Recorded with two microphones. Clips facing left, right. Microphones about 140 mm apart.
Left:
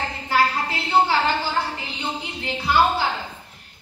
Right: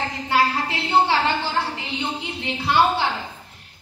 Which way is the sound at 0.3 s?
25° right (ahead or behind).